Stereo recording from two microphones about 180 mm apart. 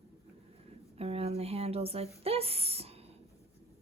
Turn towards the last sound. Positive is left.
turn(degrees=-35)  # may be behind; listen again after turning